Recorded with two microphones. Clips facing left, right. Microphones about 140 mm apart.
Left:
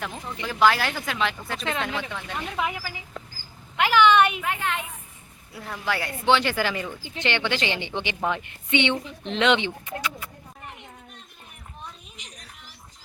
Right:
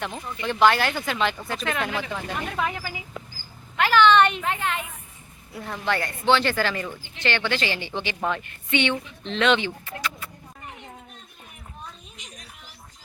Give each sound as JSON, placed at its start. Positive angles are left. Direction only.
{"t": 0.4, "sound": "speech", "side_deg": 0}
{"t": 2.6, "sound": "speech", "side_deg": 10}
{"t": 5.5, "sound": "speech", "side_deg": 0}
{"t": 12.1, "sound": "a sound", "side_deg": 0}